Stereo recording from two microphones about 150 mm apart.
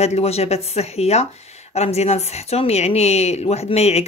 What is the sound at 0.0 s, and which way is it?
Speech, 45° left (ahead or behind).